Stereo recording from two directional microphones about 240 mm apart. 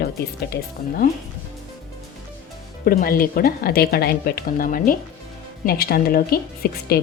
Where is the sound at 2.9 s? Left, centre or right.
Left.